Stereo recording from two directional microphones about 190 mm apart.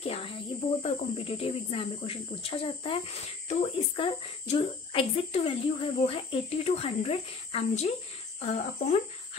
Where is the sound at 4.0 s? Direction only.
30° left (ahead or behind).